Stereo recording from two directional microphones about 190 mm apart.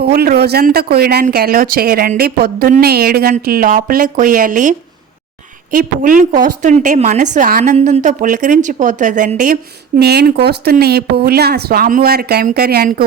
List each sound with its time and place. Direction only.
0.0 s speech: 55° right (ahead or behind)
5.7 s a woman's voice: 45° right (ahead or behind)
10.0 s speech: 60° right (ahead or behind)